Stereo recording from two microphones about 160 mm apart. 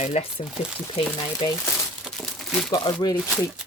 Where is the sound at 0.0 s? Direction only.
45° left (ahead or behind).